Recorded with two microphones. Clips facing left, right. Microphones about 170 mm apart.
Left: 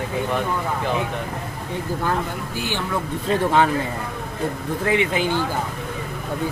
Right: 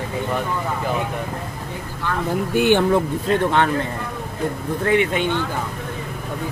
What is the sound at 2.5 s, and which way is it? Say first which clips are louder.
Speech: right 12 dB; 60° right (ahead or behind).